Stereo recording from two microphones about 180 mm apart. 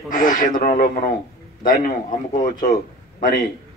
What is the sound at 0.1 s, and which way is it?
A man's voice, 50° left (ahead or behind).